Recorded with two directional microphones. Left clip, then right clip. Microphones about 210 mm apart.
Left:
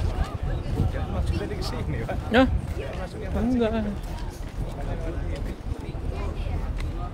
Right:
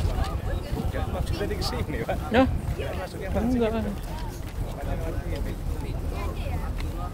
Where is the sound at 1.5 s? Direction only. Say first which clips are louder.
Right 2 dB; 45° right (ahead or behind).